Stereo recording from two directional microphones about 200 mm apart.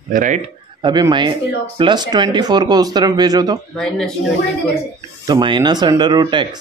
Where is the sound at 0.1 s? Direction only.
40° right (ahead or behind).